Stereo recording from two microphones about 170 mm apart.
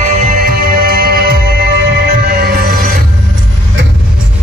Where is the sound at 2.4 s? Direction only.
65° right (ahead or behind).